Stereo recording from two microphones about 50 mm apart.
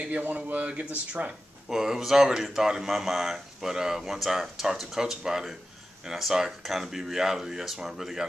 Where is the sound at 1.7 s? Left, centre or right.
Centre.